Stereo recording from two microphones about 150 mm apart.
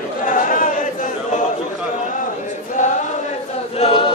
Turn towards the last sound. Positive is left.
turn(degrees=40)  # may be behind; listen again after turning